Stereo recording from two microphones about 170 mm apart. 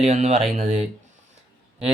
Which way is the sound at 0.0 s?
40° right (ahead or behind).